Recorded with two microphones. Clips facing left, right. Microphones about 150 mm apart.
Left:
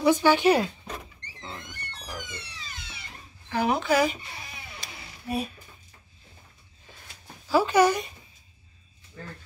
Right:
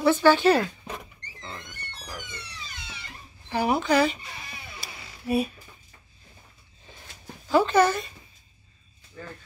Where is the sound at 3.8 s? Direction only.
10° left (ahead or behind).